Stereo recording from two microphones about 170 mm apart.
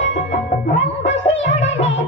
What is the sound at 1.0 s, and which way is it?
Music, 90° left.